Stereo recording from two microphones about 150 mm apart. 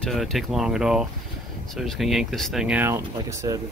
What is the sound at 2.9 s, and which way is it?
Speech, 20° right (ahead or behind).